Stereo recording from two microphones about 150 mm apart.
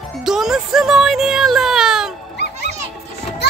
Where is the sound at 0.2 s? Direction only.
5° right (ahead or behind).